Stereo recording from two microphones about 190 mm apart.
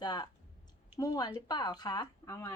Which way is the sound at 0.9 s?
20° left (ahead or behind).